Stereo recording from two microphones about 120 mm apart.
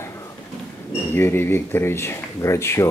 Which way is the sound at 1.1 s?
20° left (ahead or behind).